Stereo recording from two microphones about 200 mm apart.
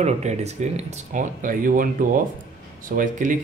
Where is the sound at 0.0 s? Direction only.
35° right (ahead or behind).